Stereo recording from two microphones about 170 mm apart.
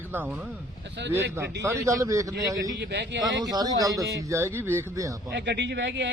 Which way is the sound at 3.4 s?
20° right (ahead or behind).